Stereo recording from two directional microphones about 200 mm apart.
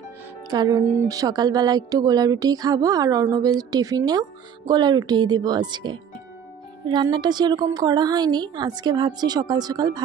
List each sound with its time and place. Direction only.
0.5 s a woman's voice: 20° right (ahead or behind)